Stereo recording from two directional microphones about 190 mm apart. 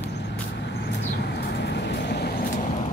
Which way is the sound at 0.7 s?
60° left (ahead or behind).